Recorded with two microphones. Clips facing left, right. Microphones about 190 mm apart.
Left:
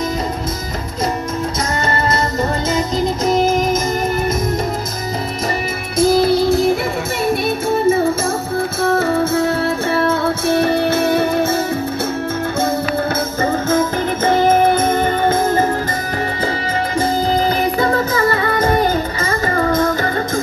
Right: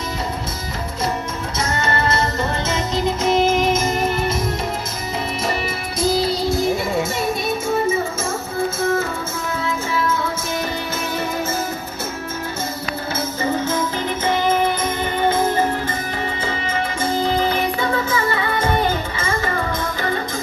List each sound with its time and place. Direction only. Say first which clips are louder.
3.3 s music: left 1 dB; 40° left (ahead or behind)
5.9 s music: left 7 dB; 55° left (ahead or behind)
8.8 s music: left 6 dB; 65° left (ahead or behind)
14.2 s music: left 6 dB; 50° left (ahead or behind)
17.0 s music: left 2 dB; 40° left (ahead or behind)